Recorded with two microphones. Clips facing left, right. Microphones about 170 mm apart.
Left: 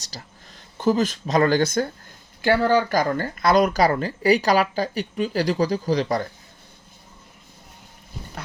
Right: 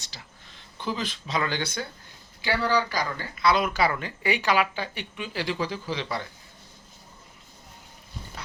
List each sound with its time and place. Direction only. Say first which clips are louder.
0.0 s speech: left 6 dB; 40° left (ahead or behind)